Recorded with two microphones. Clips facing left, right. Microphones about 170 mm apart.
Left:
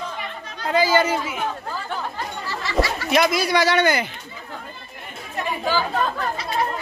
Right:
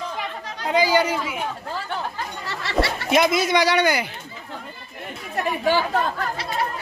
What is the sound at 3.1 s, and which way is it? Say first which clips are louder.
Speech: right 2 dB; 25° right (ahead or behind).